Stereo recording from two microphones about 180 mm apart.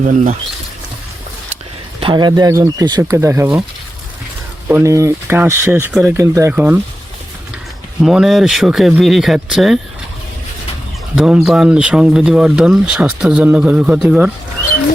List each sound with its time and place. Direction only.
0.0 s speech: 45° right (ahead or behind)
2.0 s speech: 25° right (ahead or behind)
4.7 s speech: 15° right (ahead or behind)
8.0 s speech: centre (ahead or behind)
11.1 s speech: 5° right (ahead or behind)